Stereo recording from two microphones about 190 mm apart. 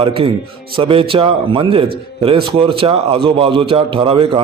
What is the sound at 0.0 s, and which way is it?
A man's voice, 30° right (ahead or behind).